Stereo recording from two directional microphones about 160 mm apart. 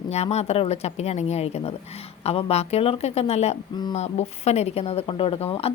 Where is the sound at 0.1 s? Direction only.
40° left (ahead or behind).